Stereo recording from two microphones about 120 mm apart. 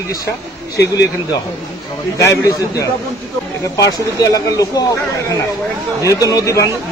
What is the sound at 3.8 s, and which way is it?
Speech, 30° left (ahead or behind).